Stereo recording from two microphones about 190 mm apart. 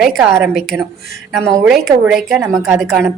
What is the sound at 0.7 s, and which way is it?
Speech, 10° right (ahead or behind).